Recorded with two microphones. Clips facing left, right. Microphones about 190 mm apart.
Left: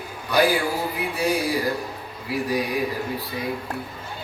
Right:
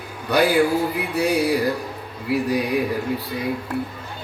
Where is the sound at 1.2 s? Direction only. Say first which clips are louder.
Right 4 dB; 65° right (ahead or behind).